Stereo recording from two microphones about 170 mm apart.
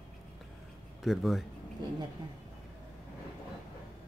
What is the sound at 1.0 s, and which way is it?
Speech, centre (ahead or behind).